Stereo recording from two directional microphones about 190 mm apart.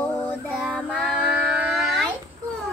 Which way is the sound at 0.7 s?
5° right (ahead or behind).